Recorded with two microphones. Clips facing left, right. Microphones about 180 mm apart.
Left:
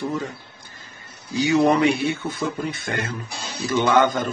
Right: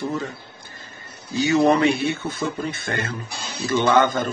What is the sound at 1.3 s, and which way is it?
Speech, 15° left (ahead or behind).